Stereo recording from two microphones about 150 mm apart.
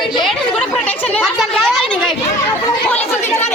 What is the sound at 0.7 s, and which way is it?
Chatter, 5° left (ahead or behind).